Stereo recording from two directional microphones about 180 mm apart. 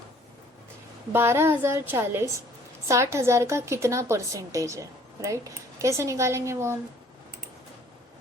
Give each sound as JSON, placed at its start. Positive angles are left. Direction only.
{"t": 1.1, "sound": "a woman's voice", "side_deg": -15}